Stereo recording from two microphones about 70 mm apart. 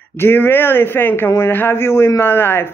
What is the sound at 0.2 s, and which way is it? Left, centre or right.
Speech, left.